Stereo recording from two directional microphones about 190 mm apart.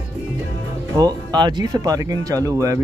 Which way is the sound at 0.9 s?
20° right (ahead or behind).